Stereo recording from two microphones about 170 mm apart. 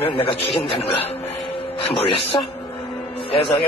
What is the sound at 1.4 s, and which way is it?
Music, 35° left (ahead or behind).